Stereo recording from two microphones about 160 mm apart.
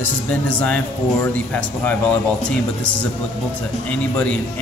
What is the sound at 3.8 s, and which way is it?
Speech, 10° left (ahead or behind).